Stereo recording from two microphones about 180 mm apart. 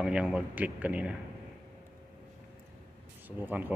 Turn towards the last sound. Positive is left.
turn(degrees=-10)  # may be behind; listen again after turning